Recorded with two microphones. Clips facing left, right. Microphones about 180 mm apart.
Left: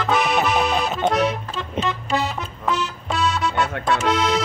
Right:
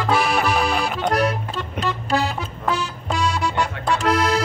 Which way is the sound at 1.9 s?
Centre (ahead or behind).